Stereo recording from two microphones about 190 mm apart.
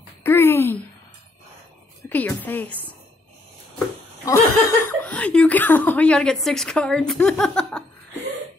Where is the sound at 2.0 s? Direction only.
10° left (ahead or behind).